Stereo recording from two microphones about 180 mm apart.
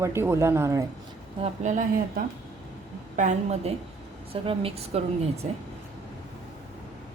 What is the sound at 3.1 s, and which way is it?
A woman's voice, 40° right (ahead or behind).